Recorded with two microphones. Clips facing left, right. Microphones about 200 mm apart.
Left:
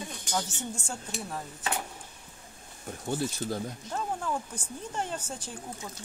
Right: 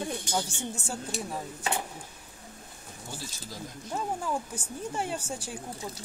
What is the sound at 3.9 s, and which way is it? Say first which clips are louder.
Speech: right 2 dB; 10° right (ahead or behind).